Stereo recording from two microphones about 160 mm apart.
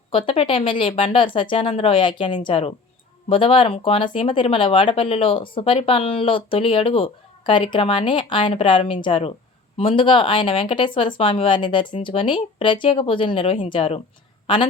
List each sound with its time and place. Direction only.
0.1 s a woman's voice: 35° left (ahead or behind)